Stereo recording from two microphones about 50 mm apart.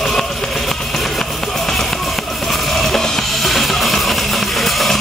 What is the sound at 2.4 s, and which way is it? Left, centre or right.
Music, centre.